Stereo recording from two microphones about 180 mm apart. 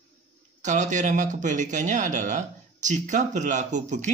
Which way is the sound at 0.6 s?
40° right (ahead or behind).